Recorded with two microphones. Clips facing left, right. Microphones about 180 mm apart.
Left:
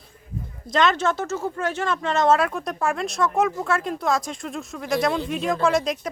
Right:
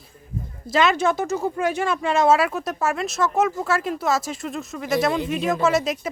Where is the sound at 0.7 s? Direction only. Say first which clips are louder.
Right 1 dB; 10° right (ahead or behind).